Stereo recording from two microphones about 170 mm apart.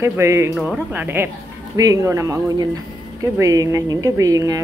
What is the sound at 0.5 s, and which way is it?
Speech, 5° right (ahead or behind).